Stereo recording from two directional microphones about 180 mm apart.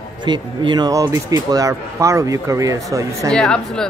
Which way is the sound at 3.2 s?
5° left (ahead or behind).